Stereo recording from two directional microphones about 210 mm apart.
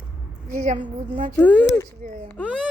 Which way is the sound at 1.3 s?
5° left (ahead or behind).